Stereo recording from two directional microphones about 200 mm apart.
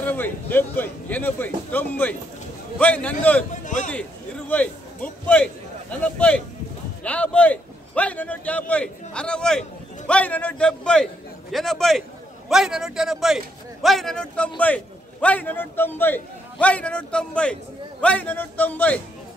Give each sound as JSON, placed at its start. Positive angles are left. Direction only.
{"t": 0.0, "sound": "a man's voice", "side_deg": 10}
{"t": 3.6, "sound": "a man's voice", "side_deg": 40}
{"t": 3.9, "sound": "a man's voice", "side_deg": 5}